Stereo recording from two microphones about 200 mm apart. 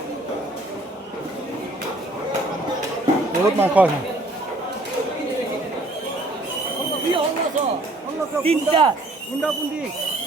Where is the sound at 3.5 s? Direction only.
10° right (ahead or behind).